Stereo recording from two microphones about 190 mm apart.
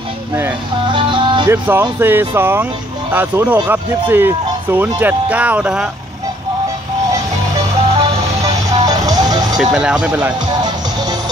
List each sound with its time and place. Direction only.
0.9 s music: 25° right (ahead or behind)
1.5 s speech: 10° right (ahead or behind)
8.0 s music: 20° right (ahead or behind)
9.6 s speech: 5° right (ahead or behind)